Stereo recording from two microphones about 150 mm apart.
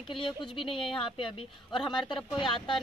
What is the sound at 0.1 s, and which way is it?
Speech, 35° left (ahead or behind).